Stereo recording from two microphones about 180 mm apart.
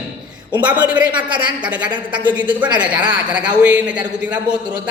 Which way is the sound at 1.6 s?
5° right (ahead or behind).